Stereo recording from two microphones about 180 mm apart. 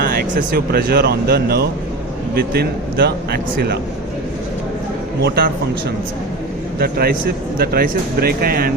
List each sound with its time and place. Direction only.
0.0 s speech: 55° right (ahead or behind)
5.2 s speech: 60° right (ahead or behind)
6.7 s speech: 60° right (ahead or behind)